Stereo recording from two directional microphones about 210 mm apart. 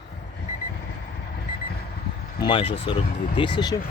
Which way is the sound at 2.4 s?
25° left (ahead or behind).